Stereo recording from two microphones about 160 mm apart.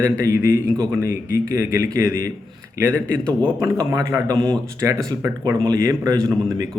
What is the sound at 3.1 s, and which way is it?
Speech, 5° left (ahead or behind).